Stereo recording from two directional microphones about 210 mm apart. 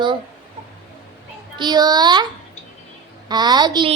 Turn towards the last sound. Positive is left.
turn(degrees=-20)  # may be behind; listen again after turning